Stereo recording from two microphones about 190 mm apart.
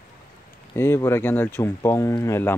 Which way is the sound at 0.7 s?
15° left (ahead or behind).